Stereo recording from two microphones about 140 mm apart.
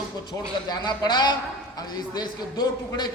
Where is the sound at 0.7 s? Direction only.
30° left (ahead or behind).